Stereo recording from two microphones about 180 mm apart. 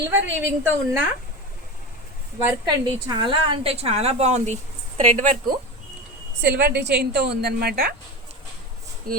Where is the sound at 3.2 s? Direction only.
25° right (ahead or behind); by 5.5 s 45° right (ahead or behind).